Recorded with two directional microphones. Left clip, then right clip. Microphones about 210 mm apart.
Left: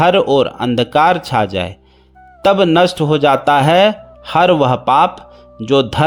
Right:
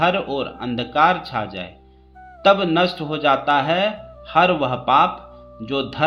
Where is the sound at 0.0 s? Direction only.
45° left (ahead or behind).